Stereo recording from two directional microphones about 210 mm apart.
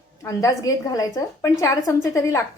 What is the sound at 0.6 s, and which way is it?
A woman's voice, 15° left (ahead or behind).